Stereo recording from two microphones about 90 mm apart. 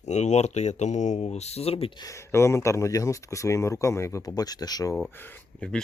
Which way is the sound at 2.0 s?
35° left (ahead or behind).